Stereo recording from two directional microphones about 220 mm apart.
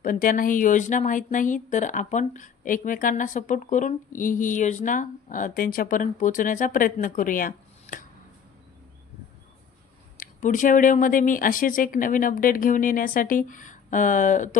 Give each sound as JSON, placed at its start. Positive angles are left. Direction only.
{"t": 0.0, "sound": "speech", "side_deg": 40}
{"t": 10.1, "sound": "speech", "side_deg": 35}